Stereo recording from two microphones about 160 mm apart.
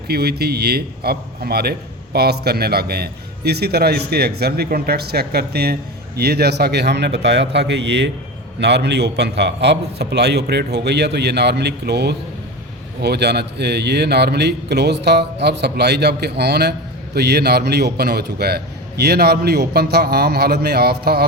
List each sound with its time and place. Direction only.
0.1 s a man's voice: 80° right